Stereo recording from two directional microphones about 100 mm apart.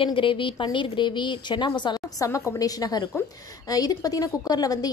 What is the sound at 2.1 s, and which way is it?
A woman's voice, 30° left (ahead or behind).